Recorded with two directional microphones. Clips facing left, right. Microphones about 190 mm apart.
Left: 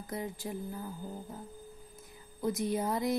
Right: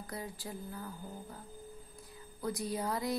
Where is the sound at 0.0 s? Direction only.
20° left (ahead or behind).